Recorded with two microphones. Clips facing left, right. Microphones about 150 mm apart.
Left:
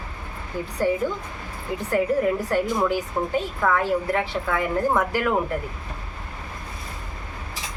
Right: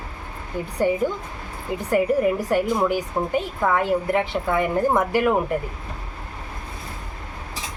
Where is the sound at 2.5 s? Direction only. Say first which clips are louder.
Right 2 dB; 15° right (ahead or behind).